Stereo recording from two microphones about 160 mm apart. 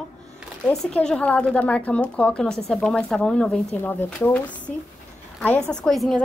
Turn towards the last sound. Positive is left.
turn(degrees=0)  # may be behind; listen again after turning